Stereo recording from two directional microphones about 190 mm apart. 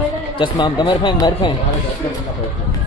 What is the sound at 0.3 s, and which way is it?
Speech, 25° left (ahead or behind).